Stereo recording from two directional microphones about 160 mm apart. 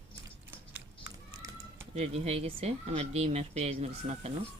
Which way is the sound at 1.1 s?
25° right (ahead or behind).